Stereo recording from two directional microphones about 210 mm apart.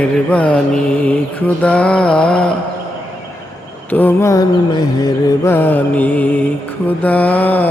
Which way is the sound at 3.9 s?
10° left (ahead or behind).